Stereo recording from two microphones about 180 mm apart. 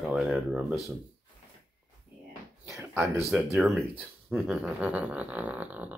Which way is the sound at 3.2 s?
Centre (ahead or behind).